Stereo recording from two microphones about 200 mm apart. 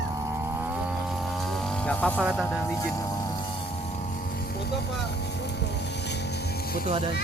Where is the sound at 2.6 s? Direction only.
15° left (ahead or behind); by 4.7 s 50° left (ahead or behind).